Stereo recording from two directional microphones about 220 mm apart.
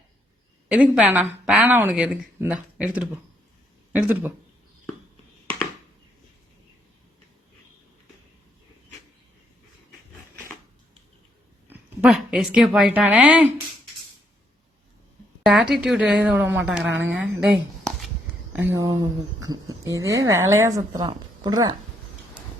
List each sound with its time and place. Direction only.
0.7 s speech: 5° right (ahead or behind)
11.7 s a woman's voice: 5° right (ahead or behind)
15.4 s a woman's voice: centre (ahead or behind)
17.4 s a sound: centre (ahead or behind)
18.8 s speech: 15° right (ahead or behind)